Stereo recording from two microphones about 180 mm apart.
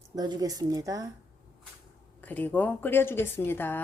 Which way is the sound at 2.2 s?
10° left (ahead or behind).